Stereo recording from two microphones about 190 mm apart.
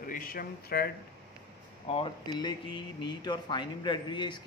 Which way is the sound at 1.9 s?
30° left (ahead or behind).